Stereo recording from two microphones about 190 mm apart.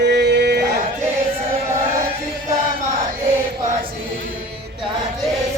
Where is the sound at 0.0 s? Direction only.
60° right (ahead or behind).